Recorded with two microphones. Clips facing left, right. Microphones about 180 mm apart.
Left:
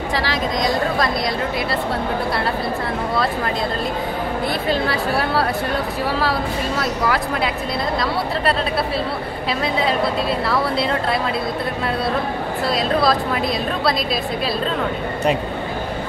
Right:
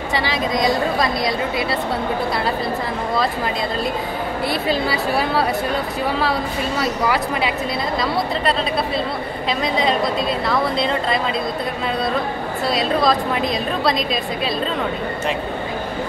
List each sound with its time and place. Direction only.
0.1 s a woman's voice: centre (ahead or behind)
4.5 s a woman's voice: centre (ahead or behind)
6.8 s a woman's voice: centre (ahead or behind)
9.5 s a woman's voice: 5° left (ahead or behind)
12.6 s a woman's voice: centre (ahead or behind)